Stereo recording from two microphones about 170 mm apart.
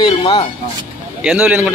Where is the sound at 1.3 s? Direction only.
10° right (ahead or behind).